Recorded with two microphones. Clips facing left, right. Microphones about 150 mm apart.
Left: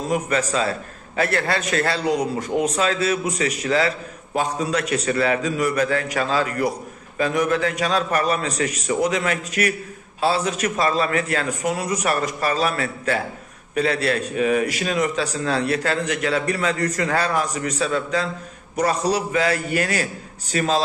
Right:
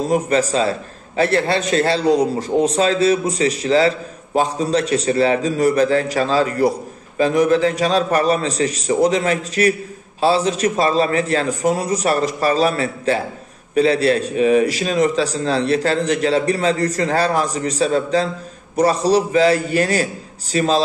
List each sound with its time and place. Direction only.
0.1 s a man's voice: 30° right (ahead or behind)